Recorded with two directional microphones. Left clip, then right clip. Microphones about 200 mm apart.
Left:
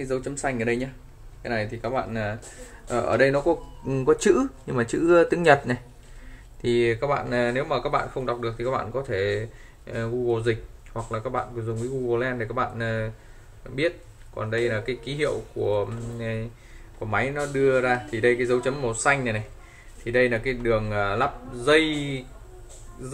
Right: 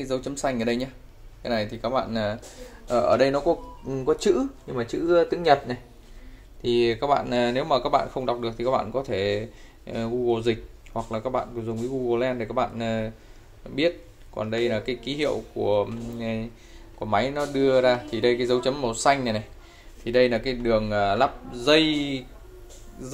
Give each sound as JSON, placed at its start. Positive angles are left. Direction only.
{"t": 0.0, "sound": "speech", "side_deg": -15}
{"t": 2.9, "sound": "speech", "side_deg": -5}
{"t": 4.0, "sound": "speech", "side_deg": 20}
{"t": 6.8, "sound": "speech", "side_deg": -5}